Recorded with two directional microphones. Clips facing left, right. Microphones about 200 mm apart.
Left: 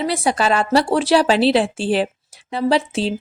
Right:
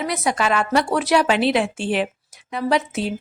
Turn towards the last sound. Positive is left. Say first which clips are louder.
# left 3 dB
turn(degrees=30)  # may be behind; listen again after turning